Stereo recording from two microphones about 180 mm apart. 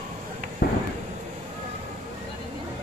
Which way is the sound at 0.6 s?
65° left (ahead or behind).